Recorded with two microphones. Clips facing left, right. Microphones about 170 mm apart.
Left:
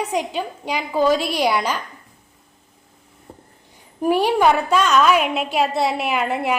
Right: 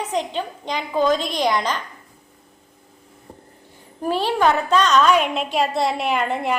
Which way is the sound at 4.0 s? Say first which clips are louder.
Left 3 dB; 15° left (ahead or behind).